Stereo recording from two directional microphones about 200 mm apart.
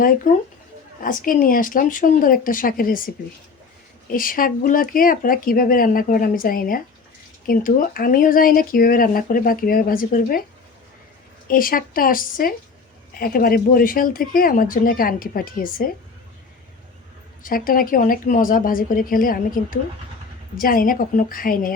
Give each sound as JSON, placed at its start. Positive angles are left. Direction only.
{"t": 1.0, "sound": "speech", "side_deg": 45}
{"t": 4.1, "sound": "speech", "side_deg": 45}
{"t": 11.4, "sound": "speech", "side_deg": 45}
{"t": 17.4, "sound": "speech", "side_deg": 45}